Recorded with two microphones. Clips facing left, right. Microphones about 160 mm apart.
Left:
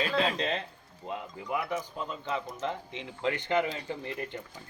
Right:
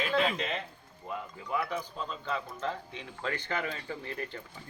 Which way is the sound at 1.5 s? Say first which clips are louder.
Left 1 dB; 15° left (ahead or behind).